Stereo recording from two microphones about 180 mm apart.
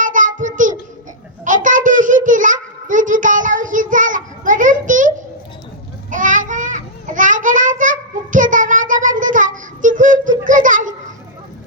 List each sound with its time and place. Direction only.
0.0 s child singing: 45° right (ahead or behind)
1.5 s a sound: 45° right (ahead or behind)
6.1 s child singing: 45° right (ahead or behind)